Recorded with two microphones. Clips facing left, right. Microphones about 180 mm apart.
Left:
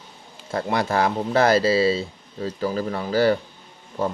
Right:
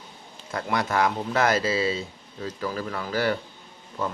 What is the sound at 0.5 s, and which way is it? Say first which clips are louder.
Speech: left 3 dB; 30° left (ahead or behind).